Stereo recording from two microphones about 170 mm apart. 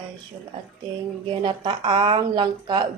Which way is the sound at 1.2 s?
30° right (ahead or behind).